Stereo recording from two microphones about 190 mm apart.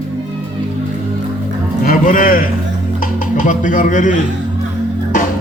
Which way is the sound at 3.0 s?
45° left (ahead or behind).